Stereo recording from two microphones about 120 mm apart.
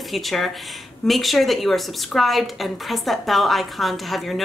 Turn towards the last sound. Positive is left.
turn(degrees=0)  # may be behind; listen again after turning